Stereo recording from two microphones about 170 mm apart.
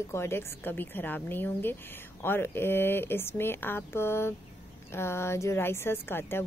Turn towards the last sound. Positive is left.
turn(degrees=15)  # may be behind; listen again after turning